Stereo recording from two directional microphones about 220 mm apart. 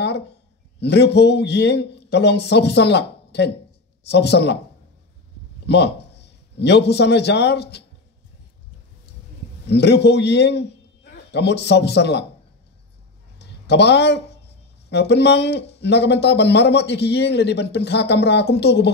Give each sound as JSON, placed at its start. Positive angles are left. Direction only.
{"t": 0.7, "sound": "a man's voice", "side_deg": 50}
{"t": 5.7, "sound": "a man's voice", "side_deg": 50}
{"t": 9.7, "sound": "a man's voice", "side_deg": 50}
{"t": 13.4, "sound": "a sound", "side_deg": 50}
{"t": 14.9, "sound": "a man's voice", "side_deg": 50}